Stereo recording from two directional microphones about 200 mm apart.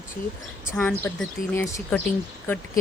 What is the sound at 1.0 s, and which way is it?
A woman's voice, 10° left (ahead or behind).